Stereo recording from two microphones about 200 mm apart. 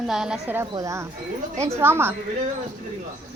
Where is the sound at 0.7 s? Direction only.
15° right (ahead or behind).